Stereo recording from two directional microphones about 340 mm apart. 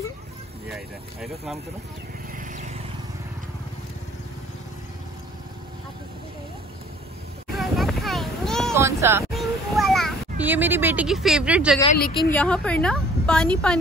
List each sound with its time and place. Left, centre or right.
0.7 s a woman's voice: centre
2.3 s vehicle: right
7.5 s a sound: centre
12.2 s a woman's voice: centre